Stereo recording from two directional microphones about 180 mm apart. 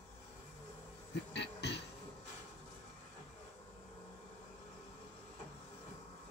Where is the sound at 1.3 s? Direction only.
70° left (ahead or behind).